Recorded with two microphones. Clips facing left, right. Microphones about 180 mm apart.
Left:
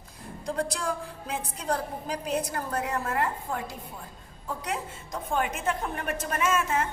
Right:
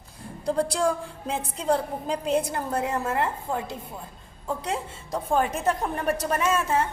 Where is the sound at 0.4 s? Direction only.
30° right (ahead or behind).